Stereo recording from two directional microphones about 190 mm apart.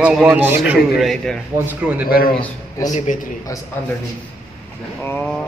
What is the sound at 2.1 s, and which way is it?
A man's voice, 50° left (ahead or behind).